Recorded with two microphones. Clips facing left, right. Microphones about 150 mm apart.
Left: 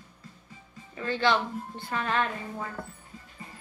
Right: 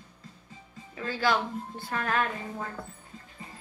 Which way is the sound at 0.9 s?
5° right (ahead or behind).